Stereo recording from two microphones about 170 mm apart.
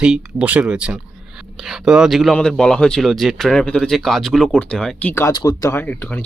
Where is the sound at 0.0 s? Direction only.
5° right (ahead or behind).